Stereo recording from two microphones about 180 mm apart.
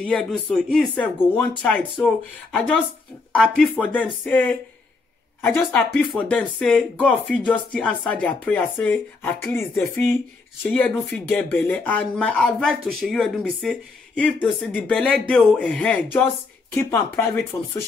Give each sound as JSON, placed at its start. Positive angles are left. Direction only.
{"t": 0.0, "sound": "speech", "side_deg": 0}
{"t": 17.5, "sound": "speech", "side_deg": 20}